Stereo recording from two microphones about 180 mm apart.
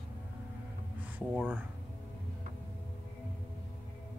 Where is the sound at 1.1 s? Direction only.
Centre (ahead or behind).